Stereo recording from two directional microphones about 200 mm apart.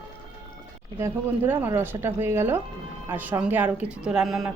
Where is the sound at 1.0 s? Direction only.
10° right (ahead or behind).